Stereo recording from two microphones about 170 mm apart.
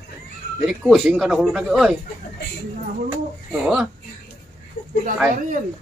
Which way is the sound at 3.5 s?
5° right (ahead or behind).